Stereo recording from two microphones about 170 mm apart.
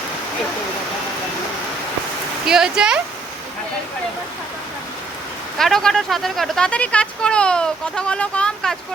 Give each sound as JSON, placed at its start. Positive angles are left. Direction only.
{"t": 2.5, "sound": "speech", "side_deg": -5}
{"t": 5.5, "sound": "speech", "side_deg": 5}